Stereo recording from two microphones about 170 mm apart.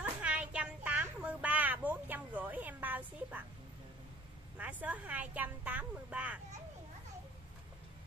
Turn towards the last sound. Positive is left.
turn(degrees=-10)  # may be behind; listen again after turning